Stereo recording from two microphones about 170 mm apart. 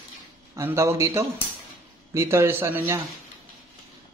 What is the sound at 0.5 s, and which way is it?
Speech, 15° right (ahead or behind).